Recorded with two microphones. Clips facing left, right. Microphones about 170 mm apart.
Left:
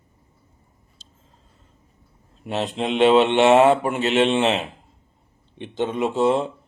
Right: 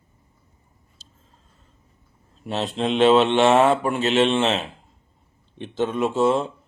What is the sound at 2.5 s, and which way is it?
Mantra, 15° left (ahead or behind).